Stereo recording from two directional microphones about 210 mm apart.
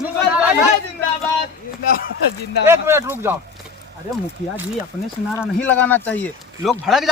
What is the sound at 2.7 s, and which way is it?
Speech, 10° right (ahead or behind).